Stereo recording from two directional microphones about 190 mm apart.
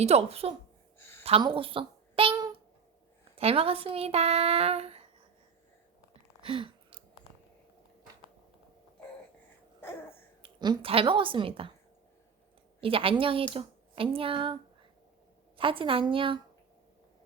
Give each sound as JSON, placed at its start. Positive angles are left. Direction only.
{"t": 0.0, "sound": "a woman's voice", "side_deg": -35}
{"t": 3.3, "sound": "speech", "side_deg": -30}
{"t": 6.4, "sound": "a sound", "side_deg": -30}
{"t": 10.4, "sound": "a woman's voice", "side_deg": -25}
{"t": 12.8, "sound": "a woman's voice", "side_deg": -30}